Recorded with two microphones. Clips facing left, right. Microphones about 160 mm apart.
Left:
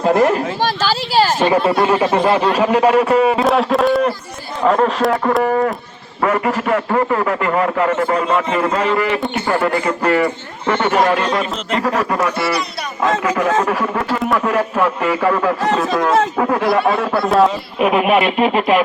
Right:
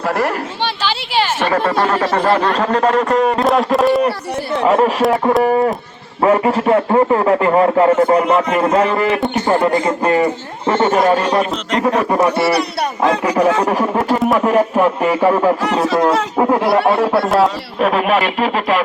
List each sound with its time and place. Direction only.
0.0 s speech: 20° left (ahead or behind)
0.6 s speech: 40° left (ahead or behind)
1.5 s speech: 15° left (ahead or behind); by 5.1 s 5° right (ahead or behind)
5.4 s a man's voice: 25° right (ahead or behind)
9.5 s a man's voice: 20° right (ahead or behind)
11.9 s a man's voice: 20° right (ahead or behind)
13.1 s a man's voice: 35° right (ahead or behind)
14.3 s a man's voice: 20° right (ahead or behind)
14.8 s a man's voice: 40° right (ahead or behind)
16.4 s speech: 15° right (ahead or behind)
17.2 s speech: centre (ahead or behind); by 18.4 s 20° left (ahead or behind)
18.4 s a man's voice: 30° right (ahead or behind)